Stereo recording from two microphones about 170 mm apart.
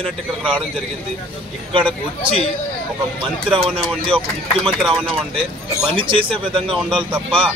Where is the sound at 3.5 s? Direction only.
35° right (ahead or behind).